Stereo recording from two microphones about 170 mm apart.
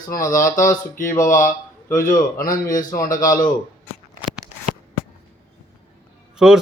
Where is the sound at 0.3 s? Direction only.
50° left (ahead or behind).